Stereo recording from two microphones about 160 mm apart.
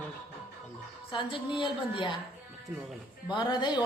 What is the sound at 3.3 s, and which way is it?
Speech, 25° left (ahead or behind).